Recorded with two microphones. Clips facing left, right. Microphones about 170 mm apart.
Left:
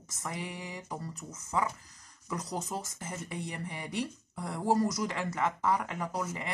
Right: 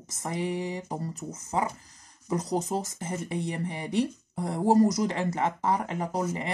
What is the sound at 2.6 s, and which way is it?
Speech, 35° right (ahead or behind).